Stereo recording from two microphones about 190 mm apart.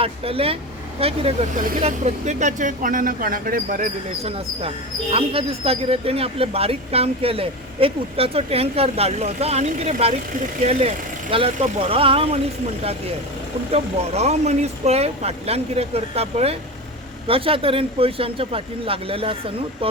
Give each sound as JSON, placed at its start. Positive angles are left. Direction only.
{"t": 0.0, "sound": "speech", "side_deg": -30}
{"t": 1.6, "sound": "speech", "side_deg": -40}
{"t": 13.7, "sound": "speech", "side_deg": -35}